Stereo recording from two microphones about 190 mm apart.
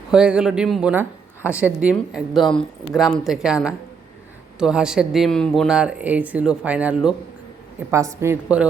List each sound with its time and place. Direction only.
0.1 s a woman's voice: 5° right (ahead or behind)